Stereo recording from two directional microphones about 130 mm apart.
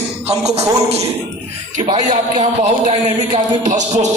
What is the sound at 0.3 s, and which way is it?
Speech, 55° right (ahead or behind).